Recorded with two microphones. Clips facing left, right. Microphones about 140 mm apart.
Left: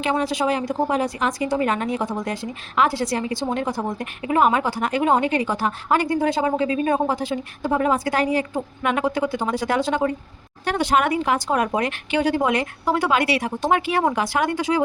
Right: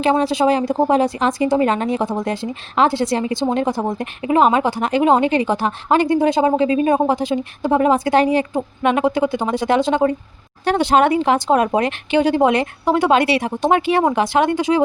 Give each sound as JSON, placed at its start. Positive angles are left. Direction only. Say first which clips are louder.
{"t": 0.0, "sound": "a woman's voice", "louder": "right 6 dB", "side_deg": -30}